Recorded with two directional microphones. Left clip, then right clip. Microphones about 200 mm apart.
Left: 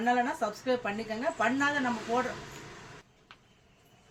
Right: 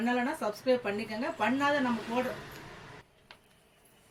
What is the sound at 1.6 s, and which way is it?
Speech, 20° left (ahead or behind).